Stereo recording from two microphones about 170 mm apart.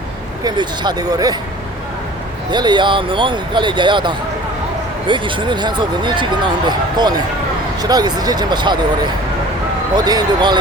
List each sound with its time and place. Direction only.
0.4 s speech: 25° right (ahead or behind)
2.5 s speech: 25° right (ahead or behind)
9.9 s speech: 25° right (ahead or behind)